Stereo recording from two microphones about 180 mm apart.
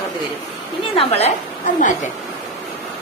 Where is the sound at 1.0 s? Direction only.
35° left (ahead or behind).